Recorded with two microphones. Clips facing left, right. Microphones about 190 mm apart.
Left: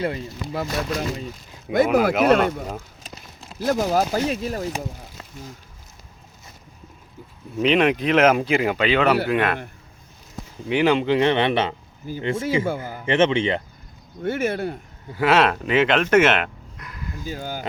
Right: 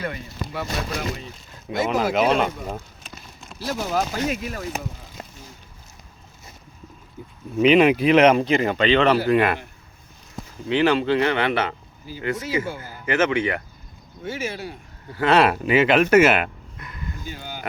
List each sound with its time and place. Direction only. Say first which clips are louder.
0.0 s speech: left 4 dB; 25° left (ahead or behind)
1.7 s speech: left 5 dB; 55° left (ahead or behind)
2.1 s speech: left 3 dB; centre (ahead or behind)
3.7 s speech: left 5 dB; 40° left (ahead or behind)
7.6 s speech: right 3 dB; 5° right (ahead or behind)
10.7 s speech: even; 15° left (ahead or behind)
12.6 s speech: left 6 dB; 55° left (ahead or behind)
13.1 s speech: left 2 dB; 25° left (ahead or behind)
14.3 s speech: left 6 dB; 55° left (ahead or behind)
15.3 s speech: right 1 dB; 5° right (ahead or behind)
17.2 s speech: left 8 dB; 40° left (ahead or behind)